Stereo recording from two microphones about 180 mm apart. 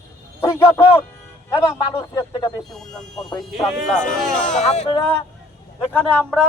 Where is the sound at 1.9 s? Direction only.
25° left (ahead or behind).